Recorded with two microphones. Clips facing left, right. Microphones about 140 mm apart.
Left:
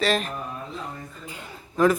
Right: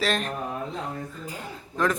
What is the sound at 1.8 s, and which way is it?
Speech, 10° left (ahead or behind).